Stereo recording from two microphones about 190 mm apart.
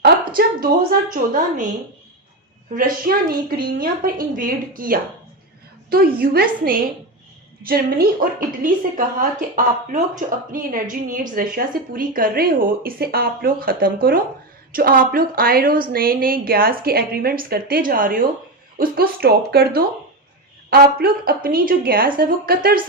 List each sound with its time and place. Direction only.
0.3 s a woman's voice: 50° right (ahead or behind)
2.7 s a woman's voice: 50° right (ahead or behind)